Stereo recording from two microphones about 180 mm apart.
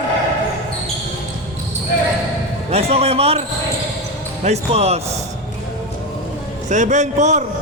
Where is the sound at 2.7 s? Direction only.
35° right (ahead or behind).